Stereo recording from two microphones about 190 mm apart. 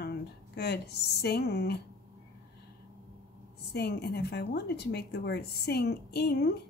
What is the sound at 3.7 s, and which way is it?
Speech, 60° left (ahead or behind).